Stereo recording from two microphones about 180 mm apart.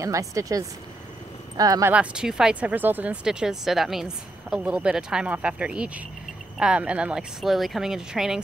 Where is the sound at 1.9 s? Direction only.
5° right (ahead or behind).